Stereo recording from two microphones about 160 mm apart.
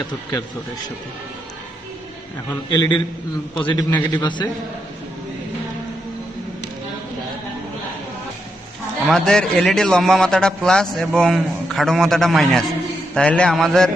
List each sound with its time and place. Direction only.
0.0 s speech: 25° left (ahead or behind)
2.6 s speech: 25° left (ahead or behind)
9.0 s a man's voice: 5° left (ahead or behind)